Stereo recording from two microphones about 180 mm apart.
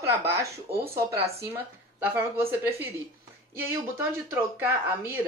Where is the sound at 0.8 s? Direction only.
15° right (ahead or behind).